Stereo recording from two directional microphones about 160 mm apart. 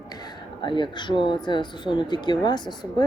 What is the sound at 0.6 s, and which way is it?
Speech, 30° left (ahead or behind).